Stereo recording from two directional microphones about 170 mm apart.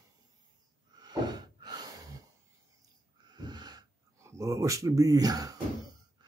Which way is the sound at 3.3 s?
25° right (ahead or behind).